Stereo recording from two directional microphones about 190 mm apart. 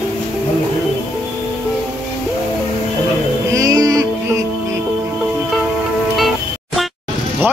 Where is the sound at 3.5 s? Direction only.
20° right (ahead or behind).